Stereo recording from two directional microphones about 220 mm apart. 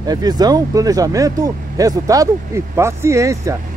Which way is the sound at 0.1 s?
15° right (ahead or behind).